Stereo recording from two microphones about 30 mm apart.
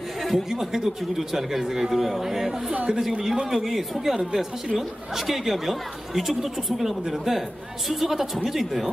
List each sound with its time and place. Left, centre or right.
0.2 s speech: centre